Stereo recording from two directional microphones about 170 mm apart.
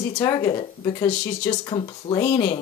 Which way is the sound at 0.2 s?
20° left (ahead or behind).